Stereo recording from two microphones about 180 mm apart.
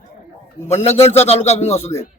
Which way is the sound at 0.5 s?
15° left (ahead or behind).